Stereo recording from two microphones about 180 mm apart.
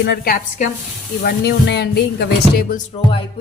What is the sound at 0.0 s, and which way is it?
Speech, 60° left (ahead or behind).